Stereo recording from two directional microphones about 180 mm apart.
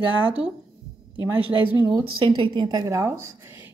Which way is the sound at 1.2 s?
10° right (ahead or behind).